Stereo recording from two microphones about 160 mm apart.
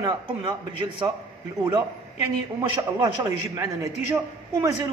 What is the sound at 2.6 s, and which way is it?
A man's voice, 25° right (ahead or behind).